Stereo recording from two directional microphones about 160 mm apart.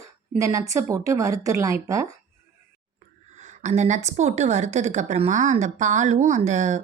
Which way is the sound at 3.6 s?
50° right (ahead or behind).